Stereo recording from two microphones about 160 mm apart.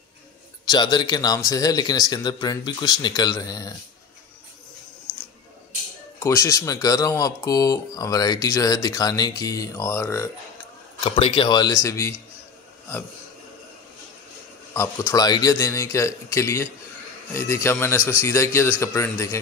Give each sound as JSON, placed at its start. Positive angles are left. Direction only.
{"t": 0.7, "sound": "speech", "side_deg": 25}
{"t": 6.1, "sound": "speech", "side_deg": 15}
{"t": 11.1, "sound": "speech", "side_deg": 35}
{"t": 14.7, "sound": "speech", "side_deg": 15}